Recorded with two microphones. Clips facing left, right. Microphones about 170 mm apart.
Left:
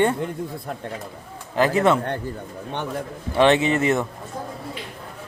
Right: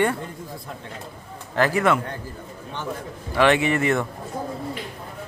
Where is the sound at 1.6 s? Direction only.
20° left (ahead or behind).